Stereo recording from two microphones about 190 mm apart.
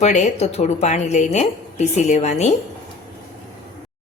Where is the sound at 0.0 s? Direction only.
35° left (ahead or behind).